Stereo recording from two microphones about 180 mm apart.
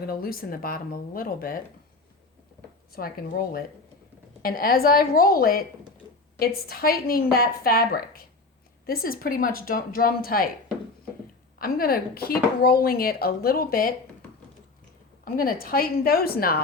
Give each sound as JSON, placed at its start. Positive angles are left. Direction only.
{"t": 0.1, "sound": "speech", "side_deg": 55}
{"t": 2.9, "sound": "speech", "side_deg": 55}
{"t": 11.6, "sound": "speech", "side_deg": 55}
{"t": 15.2, "sound": "a woman's voice", "side_deg": 50}